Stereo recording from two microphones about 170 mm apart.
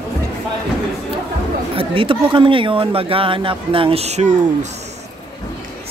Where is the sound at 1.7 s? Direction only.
30° right (ahead or behind).